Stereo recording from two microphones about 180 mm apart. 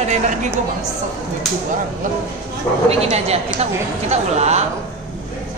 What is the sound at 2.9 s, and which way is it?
A woman's voice, 35° right (ahead or behind).